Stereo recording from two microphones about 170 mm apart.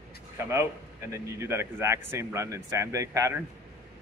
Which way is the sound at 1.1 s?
15° right (ahead or behind).